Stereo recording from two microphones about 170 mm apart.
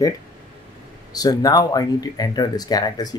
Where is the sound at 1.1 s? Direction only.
20° left (ahead or behind).